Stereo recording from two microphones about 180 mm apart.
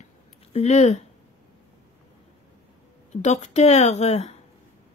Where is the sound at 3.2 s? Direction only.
40° left (ahead or behind).